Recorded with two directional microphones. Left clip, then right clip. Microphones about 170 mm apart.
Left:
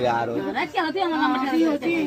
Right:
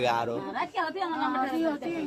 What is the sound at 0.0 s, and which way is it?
Speech, 50° right (ahead or behind).